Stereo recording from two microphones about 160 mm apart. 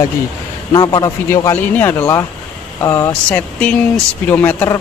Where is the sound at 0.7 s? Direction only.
25° left (ahead or behind).